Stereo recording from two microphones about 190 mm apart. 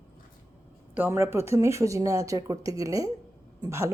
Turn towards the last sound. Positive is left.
turn(degrees=-15)  # may be behind; listen again after turning